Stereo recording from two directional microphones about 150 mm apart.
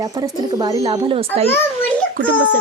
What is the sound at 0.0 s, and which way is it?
Speech, 25° right (ahead or behind).